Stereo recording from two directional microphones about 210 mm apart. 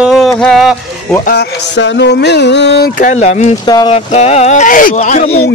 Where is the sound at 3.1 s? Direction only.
35° left (ahead or behind).